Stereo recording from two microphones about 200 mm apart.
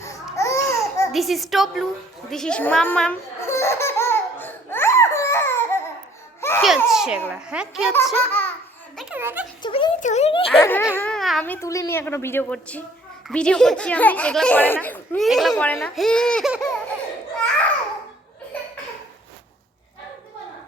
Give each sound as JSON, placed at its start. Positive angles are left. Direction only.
{"t": 0.3, "sound": "babbling", "side_deg": 15}
{"t": 1.1, "sound": "speech", "side_deg": 0}
{"t": 2.3, "sound": "baby laughter", "side_deg": 5}
{"t": 6.6, "sound": "speech", "side_deg": 0}
{"t": 7.9, "sound": "speech", "side_deg": 10}
{"t": 9.0, "sound": "a child's voice", "side_deg": -5}
{"t": 9.6, "sound": "speech", "side_deg": 25}
{"t": 10.0, "sound": "a child's voice", "side_deg": 35}
{"t": 10.6, "sound": "speech", "side_deg": 10}